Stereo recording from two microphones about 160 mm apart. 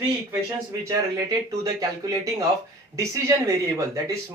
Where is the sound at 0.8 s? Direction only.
20° right (ahead or behind).